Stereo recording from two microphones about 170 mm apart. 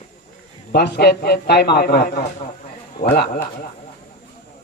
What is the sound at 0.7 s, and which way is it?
A man's voice, 75° left (ahead or behind).